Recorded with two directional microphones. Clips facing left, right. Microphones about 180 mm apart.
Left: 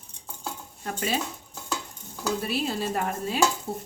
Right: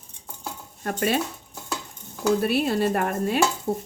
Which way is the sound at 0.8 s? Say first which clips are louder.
Right 5 dB; 55° right (ahead or behind).